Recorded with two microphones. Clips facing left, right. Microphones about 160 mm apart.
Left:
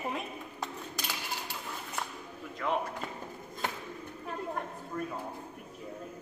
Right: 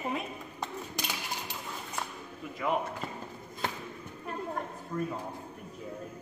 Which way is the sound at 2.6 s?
5° right (ahead or behind).